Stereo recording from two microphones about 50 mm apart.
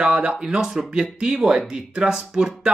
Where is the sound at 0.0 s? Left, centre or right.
Right.